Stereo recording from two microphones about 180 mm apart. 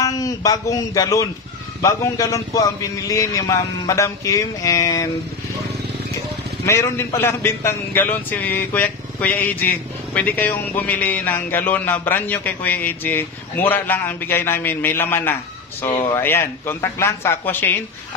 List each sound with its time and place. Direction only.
0.0 s a man's voice: 20° left (ahead or behind)
6.6 s speech: 15° left (ahead or behind)